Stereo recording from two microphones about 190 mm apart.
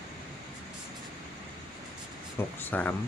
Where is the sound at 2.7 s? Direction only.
10° left (ahead or behind).